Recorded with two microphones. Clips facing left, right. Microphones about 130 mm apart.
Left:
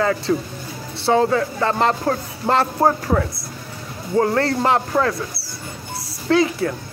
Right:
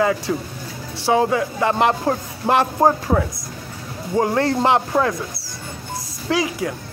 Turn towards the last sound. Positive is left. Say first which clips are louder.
# left 4 dB
turn(degrees=-15)  # may be behind; listen again after turning